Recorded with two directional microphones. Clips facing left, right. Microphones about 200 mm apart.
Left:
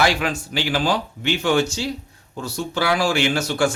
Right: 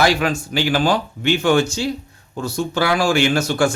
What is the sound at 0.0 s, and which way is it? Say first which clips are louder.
Speech: right 3 dB; 40° right (ahead or behind).